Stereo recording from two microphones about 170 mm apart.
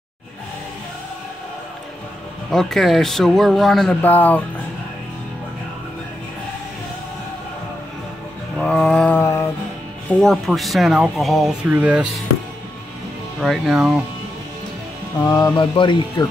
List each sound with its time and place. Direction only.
2.5 s speech: centre (ahead or behind)
8.5 s a sound: 5° left (ahead or behind)
10.0 s speech: 5° left (ahead or behind)
13.4 s speech: centre (ahead or behind)
15.2 s speech: 20° left (ahead or behind)